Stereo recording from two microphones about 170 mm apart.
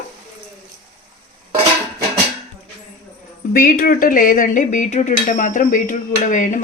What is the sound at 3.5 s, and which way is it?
Dishes, 55° left (ahead or behind).